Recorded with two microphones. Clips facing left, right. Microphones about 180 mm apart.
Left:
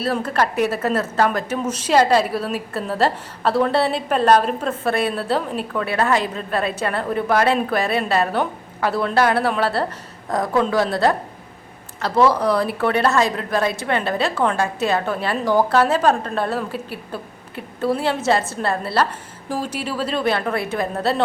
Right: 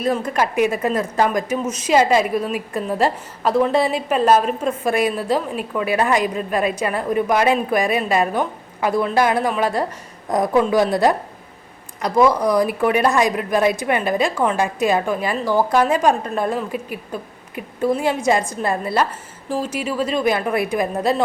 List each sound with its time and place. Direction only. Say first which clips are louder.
0.0 s a woman's voice: right 1 dB; 15° right (ahead or behind)